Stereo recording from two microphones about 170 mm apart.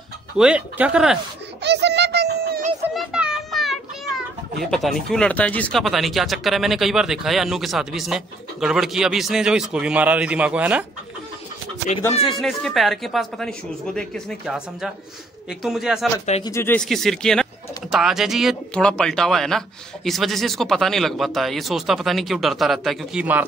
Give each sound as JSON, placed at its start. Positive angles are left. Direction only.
{"t": 0.4, "sound": "speech", "side_deg": -5}
{"t": 1.6, "sound": "a sound", "side_deg": -85}
{"t": 2.9, "sound": "children playing", "side_deg": -5}
{"t": 4.6, "sound": "speech", "side_deg": 0}
{"t": 12.2, "sound": "speech", "side_deg": 0}
{"t": 16.4, "sound": "speech", "side_deg": 15}